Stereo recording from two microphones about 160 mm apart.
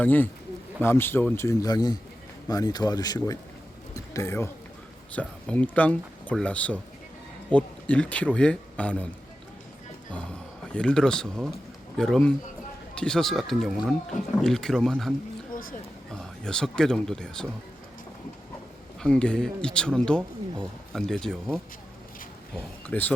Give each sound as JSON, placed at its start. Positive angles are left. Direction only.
{"t": 0.0, "sound": "speech", "side_deg": 10}
{"t": 3.9, "sound": "a sound", "side_deg": 20}
{"t": 5.1, "sound": "speech", "side_deg": 10}
{"t": 10.7, "sound": "speech", "side_deg": 5}
{"t": 15.5, "sound": "a sound", "side_deg": 60}
{"t": 16.1, "sound": "speech", "side_deg": 5}
{"t": 19.0, "sound": "speech", "side_deg": 5}
{"t": 22.5, "sound": "speech", "side_deg": 10}